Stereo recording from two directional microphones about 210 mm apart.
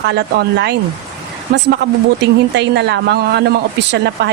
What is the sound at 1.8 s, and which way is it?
A man's voice, 55° right (ahead or behind).